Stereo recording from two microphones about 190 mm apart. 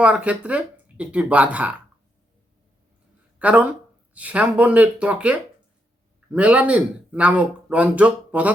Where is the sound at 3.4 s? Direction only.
5° right (ahead or behind).